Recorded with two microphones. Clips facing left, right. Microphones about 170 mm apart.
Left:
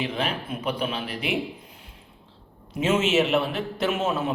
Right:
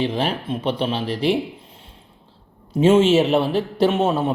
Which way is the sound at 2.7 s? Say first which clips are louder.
Right 8 dB; 30° right (ahead or behind).